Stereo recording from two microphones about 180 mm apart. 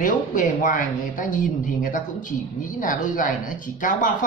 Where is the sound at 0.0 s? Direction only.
45° left (ahead or behind).